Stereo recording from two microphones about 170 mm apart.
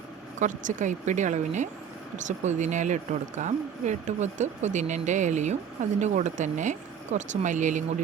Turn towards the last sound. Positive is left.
turn(degrees=-45)  # may be behind; listen again after turning